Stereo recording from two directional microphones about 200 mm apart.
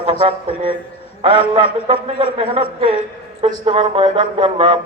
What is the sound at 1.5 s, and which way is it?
Speech, 25° right (ahead or behind).